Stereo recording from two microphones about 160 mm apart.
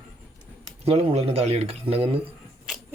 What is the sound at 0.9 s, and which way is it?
Speech, 40° right (ahead or behind).